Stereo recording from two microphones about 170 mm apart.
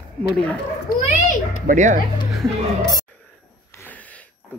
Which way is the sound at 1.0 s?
50° left (ahead or behind).